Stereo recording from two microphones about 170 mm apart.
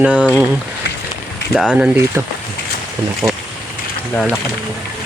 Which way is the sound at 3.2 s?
20° right (ahead or behind).